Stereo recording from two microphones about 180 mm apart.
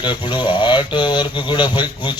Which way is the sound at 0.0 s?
25° left (ahead or behind).